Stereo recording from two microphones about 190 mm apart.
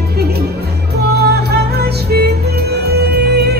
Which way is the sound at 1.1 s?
60° right (ahead or behind).